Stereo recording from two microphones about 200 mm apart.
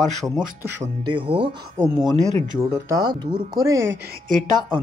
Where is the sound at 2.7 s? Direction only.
15° right (ahead or behind).